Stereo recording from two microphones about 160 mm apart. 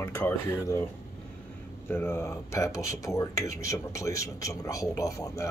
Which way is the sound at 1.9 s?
15° left (ahead or behind).